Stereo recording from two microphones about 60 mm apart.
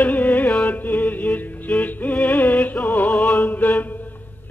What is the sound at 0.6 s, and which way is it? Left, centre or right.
Music, left.